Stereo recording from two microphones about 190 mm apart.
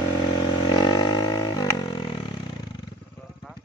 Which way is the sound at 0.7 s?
20° left (ahead or behind).